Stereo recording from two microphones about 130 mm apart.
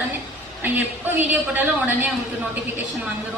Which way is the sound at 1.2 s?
15° right (ahead or behind).